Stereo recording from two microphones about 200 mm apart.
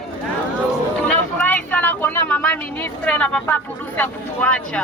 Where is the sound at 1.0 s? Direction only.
5° left (ahead or behind).